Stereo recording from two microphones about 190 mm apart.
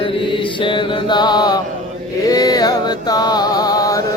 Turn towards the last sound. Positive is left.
turn(degrees=20)  # may be behind; listen again after turning